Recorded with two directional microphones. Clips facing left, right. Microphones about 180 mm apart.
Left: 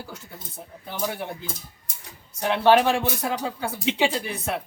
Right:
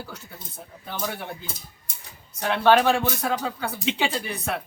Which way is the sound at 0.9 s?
15° left (ahead or behind).